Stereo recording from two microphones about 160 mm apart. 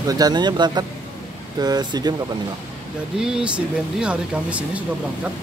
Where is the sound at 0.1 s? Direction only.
25° right (ahead or behind).